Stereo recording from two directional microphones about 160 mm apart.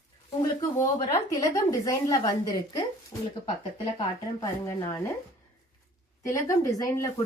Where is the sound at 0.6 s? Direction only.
20° left (ahead or behind).